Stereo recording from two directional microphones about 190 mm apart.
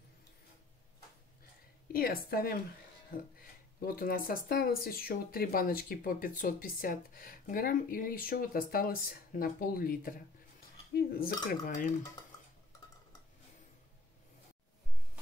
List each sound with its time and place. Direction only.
1.9 s speech: 50° left (ahead or behind)